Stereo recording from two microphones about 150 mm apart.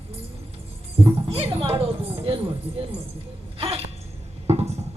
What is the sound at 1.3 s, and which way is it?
Speech, 40° right (ahead or behind).